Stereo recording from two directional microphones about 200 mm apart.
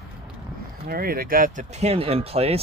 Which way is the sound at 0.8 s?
50° right (ahead or behind).